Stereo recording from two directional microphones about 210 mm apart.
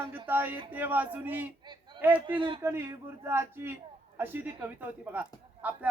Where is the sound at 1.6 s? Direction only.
20° right (ahead or behind).